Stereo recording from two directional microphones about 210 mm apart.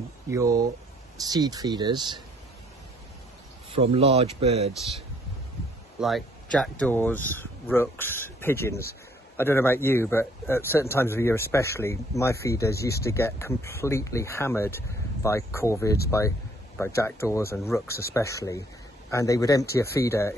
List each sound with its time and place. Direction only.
0.3 s speech: 15° right (ahead or behind)
3.7 s speech: 30° right (ahead or behind)
5.9 s a man's voice: centre (ahead or behind)